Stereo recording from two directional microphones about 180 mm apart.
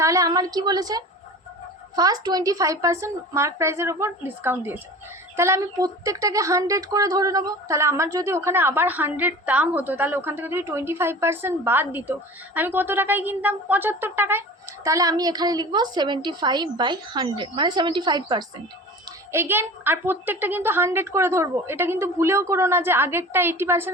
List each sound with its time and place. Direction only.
0.0 s a woman's voice: 20° right (ahead or behind)
19.3 s a woman's voice: 15° right (ahead or behind)